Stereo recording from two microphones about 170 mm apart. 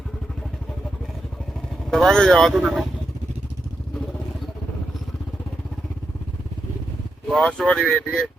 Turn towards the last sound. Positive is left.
turn(degrees=0)  # may be behind; listen again after turning